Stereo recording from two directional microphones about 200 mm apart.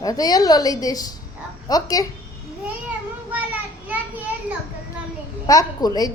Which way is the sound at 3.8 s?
10° right (ahead or behind).